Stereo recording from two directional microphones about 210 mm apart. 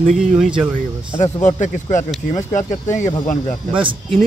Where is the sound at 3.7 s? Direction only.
25° right (ahead or behind).